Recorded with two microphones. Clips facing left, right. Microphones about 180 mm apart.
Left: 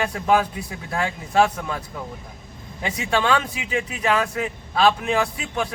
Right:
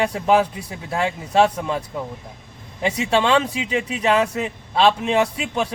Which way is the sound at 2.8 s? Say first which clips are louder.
Right 3 dB; 25° right (ahead or behind).